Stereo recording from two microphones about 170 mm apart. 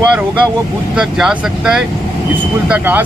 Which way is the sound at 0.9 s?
5° right (ahead or behind).